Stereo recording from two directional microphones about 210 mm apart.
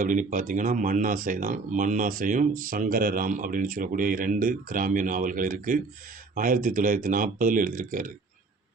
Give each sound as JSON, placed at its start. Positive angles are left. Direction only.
{"t": 0.0, "sound": "speech", "side_deg": -40}